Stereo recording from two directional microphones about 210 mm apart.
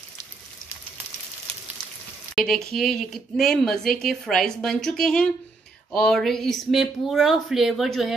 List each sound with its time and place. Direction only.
2.3 s speech: centre (ahead or behind)